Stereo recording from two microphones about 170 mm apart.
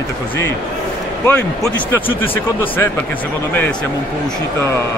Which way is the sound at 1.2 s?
15° left (ahead or behind).